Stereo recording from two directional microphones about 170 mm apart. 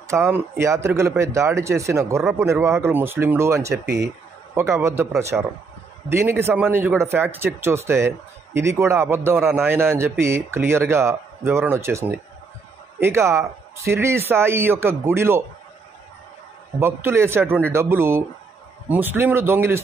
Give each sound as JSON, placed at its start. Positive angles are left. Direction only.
{"t": 0.1, "sound": "speech", "side_deg": -15}
{"t": 5.3, "sound": "speech", "side_deg": -5}
{"t": 16.8, "sound": "speech", "side_deg": -15}